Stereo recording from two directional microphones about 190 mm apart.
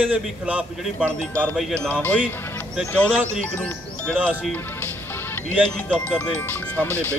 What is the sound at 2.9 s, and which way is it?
Speech, 10° left (ahead or behind).